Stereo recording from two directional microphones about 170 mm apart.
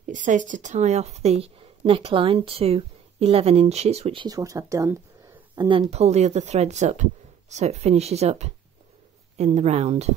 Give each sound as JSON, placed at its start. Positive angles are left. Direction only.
{"t": 0.0, "sound": "a woman's voice", "side_deg": -50}
{"t": 5.6, "sound": "a woman's voice", "side_deg": -30}